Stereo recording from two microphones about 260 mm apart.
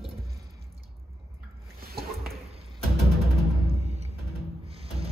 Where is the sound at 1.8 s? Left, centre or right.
Right.